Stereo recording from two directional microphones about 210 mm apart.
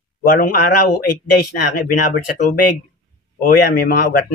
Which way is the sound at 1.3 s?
45° left (ahead or behind).